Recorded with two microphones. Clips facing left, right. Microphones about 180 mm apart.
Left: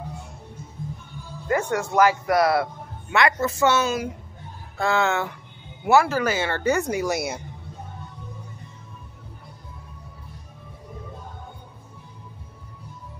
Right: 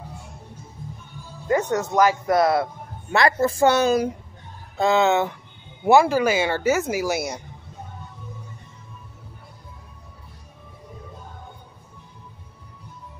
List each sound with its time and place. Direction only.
1.5 s speech: 20° right (ahead or behind)
3.1 s speech: 35° right (ahead or behind)
4.7 s speech: 20° right (ahead or behind); by 7.4 s centre (ahead or behind)